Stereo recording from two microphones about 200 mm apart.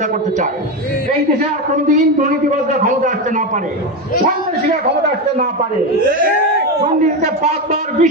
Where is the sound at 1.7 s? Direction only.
40° right (ahead or behind).